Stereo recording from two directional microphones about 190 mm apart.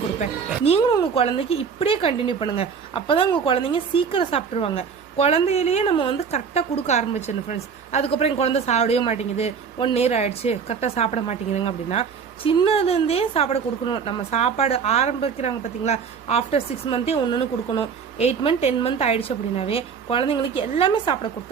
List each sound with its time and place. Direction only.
0.2 s a woman's voice: 30° left (ahead or behind)